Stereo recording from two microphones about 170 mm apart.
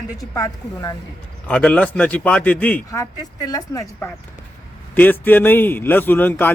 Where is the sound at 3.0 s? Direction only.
20° left (ahead or behind).